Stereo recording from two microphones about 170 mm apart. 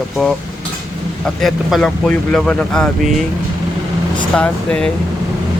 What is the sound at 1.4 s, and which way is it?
Speech, centre (ahead or behind).